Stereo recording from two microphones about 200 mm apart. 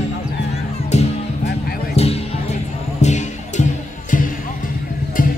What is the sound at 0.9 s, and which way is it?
Music, 35° left (ahead or behind).